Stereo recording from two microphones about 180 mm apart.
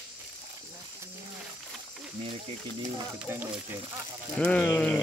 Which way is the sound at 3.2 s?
10° right (ahead or behind).